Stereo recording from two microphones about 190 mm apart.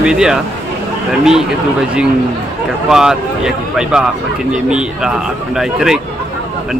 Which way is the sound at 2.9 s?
5° right (ahead or behind).